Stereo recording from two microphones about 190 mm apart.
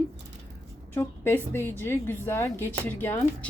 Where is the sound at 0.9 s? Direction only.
10° left (ahead or behind).